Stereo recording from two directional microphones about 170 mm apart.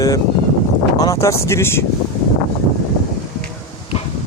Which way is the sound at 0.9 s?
20° left (ahead or behind).